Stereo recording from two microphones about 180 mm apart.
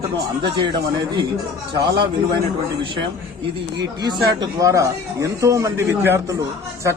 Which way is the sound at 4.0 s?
25° right (ahead or behind).